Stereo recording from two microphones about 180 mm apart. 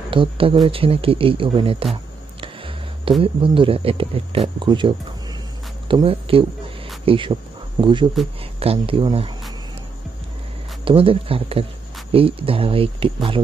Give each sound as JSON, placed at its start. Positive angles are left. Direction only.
{"t": 0.1, "sound": "speech", "side_deg": -30}
{"t": 10.9, "sound": "speech", "side_deg": -30}